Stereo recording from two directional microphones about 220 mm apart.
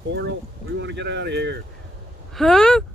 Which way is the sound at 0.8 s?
55° right (ahead or behind).